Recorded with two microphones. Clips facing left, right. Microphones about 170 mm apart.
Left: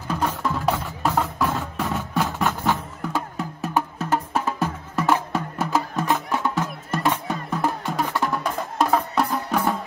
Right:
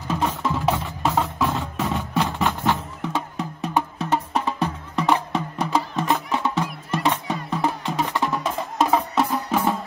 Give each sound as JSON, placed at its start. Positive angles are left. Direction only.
{"t": 0.1, "sound": "music", "side_deg": 0}